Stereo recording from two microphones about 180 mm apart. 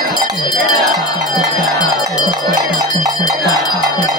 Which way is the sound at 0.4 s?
25° left (ahead or behind).